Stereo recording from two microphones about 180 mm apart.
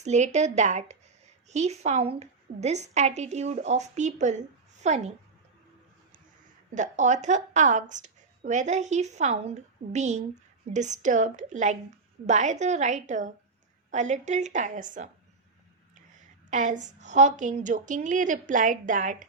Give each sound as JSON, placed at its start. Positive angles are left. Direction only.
{"t": 0.0, "sound": "a woman's voice", "side_deg": -40}
{"t": 6.7, "sound": "a woman's voice", "side_deg": -45}
{"t": 16.5, "sound": "a woman's voice", "side_deg": -45}